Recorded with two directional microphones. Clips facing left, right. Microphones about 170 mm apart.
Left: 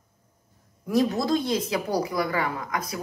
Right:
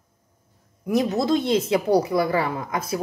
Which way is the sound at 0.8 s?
20° right (ahead or behind).